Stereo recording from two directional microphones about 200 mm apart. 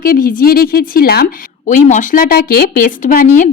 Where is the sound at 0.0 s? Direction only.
45° left (ahead or behind).